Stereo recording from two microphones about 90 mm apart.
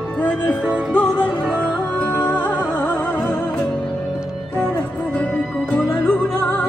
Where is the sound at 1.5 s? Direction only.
15° left (ahead or behind).